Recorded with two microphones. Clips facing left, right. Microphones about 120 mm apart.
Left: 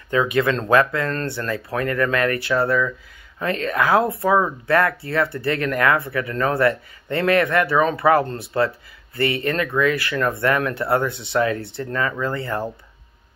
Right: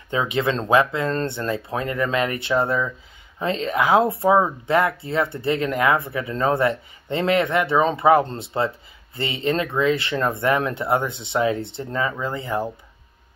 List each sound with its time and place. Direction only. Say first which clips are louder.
0.1 s speech: left 3 dB; 25° right (ahead or behind)